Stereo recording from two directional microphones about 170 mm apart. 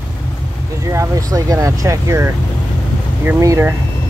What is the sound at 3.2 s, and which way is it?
Speech, 15° right (ahead or behind).